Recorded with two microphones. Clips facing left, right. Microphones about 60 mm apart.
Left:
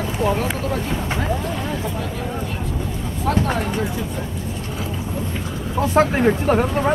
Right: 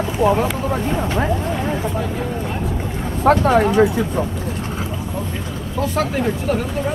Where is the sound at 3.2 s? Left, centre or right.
Right.